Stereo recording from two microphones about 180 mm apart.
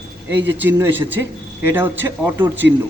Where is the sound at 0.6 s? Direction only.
10° right (ahead or behind).